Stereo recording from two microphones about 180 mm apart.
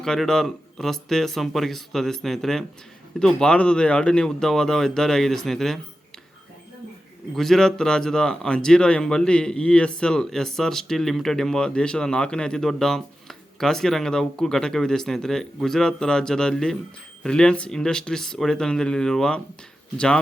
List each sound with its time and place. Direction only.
0.0 s speech: centre (ahead or behind)
7.3 s speech: centre (ahead or behind)